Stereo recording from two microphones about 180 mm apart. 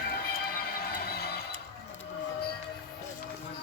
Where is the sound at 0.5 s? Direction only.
55° left (ahead or behind).